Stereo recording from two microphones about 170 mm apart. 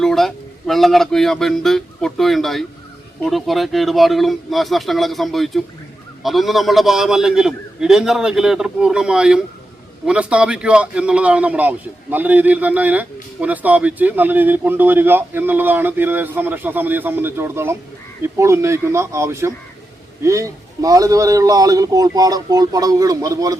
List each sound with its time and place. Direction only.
0.0 s a man's voice: centre (ahead or behind); by 23.6 s 20° right (ahead or behind)